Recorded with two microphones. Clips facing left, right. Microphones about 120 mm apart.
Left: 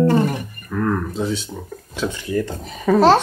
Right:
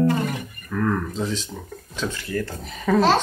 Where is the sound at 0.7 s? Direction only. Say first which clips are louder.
Left 2 dB; 5° left (ahead or behind).